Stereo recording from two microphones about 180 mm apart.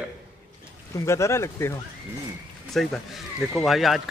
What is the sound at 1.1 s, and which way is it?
Speech, 15° left (ahead or behind).